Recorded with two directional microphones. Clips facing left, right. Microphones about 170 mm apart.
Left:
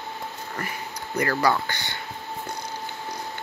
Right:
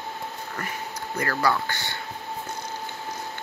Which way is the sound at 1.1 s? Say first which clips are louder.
Left 2 dB; 20° left (ahead or behind).